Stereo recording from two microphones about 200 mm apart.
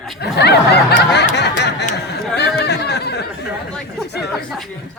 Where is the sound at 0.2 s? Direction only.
55° left (ahead or behind).